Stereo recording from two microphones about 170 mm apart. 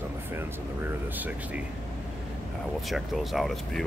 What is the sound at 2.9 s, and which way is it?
Speech, centre (ahead or behind).